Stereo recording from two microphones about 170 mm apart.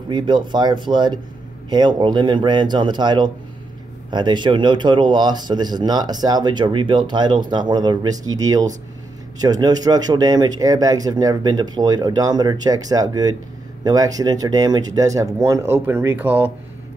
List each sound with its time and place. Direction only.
0.1 s speech: 25° right (ahead or behind); by 16.5 s 10° right (ahead or behind)